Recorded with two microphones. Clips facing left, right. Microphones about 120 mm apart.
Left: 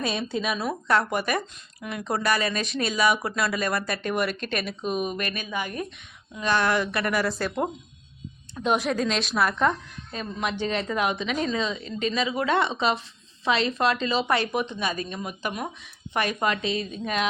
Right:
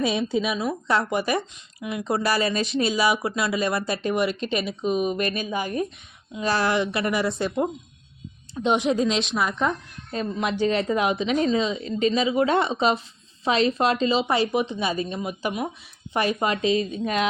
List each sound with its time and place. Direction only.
0.0 s a woman's voice: 20° right (ahead or behind)
0.9 s a woman's voice: 25° right (ahead or behind)
1.8 s a woman's voice: 10° right (ahead or behind)
2.1 s a woman's voice: 30° right (ahead or behind)
8.5 s a woman's voice: 25° right (ahead or behind)
10.1 s a woman's voice: 35° right (ahead or behind)
12.6 s a woman's voice: 35° right (ahead or behind); by 15.7 s 15° right (ahead or behind)
16.1 s a woman's voice: 25° right (ahead or behind)